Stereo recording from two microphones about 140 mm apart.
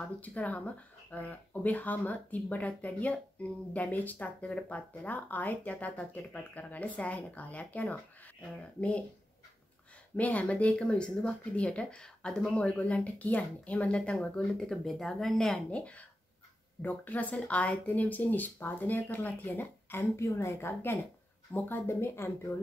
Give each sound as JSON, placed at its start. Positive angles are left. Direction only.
{"t": 0.2, "sound": "speech", "side_deg": 10}
{"t": 10.1, "sound": "speech", "side_deg": 10}